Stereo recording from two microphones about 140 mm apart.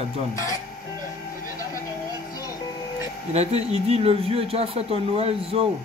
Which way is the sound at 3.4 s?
45° right (ahead or behind).